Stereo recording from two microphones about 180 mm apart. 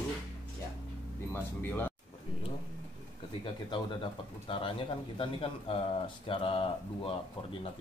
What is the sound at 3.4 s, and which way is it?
Speech, 30° left (ahead or behind).